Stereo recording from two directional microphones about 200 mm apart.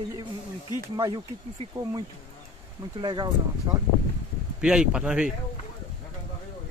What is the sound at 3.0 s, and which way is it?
Speech, 20° right (ahead or behind).